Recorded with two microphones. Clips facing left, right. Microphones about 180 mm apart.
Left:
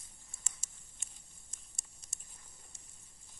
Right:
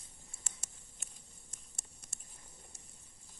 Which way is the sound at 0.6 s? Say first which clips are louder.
Right 4 dB; 60° right (ahead or behind).